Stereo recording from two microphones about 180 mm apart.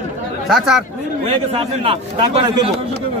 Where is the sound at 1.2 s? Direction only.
35° right (ahead or behind).